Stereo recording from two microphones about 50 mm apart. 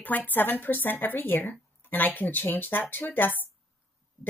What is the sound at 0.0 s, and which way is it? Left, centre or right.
Speech, left.